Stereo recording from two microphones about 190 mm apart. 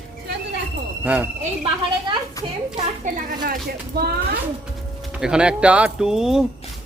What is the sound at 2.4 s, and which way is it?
Speech, 20° left (ahead or behind).